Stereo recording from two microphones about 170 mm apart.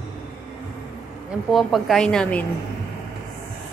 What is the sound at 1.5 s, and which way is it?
Speech, centre (ahead or behind).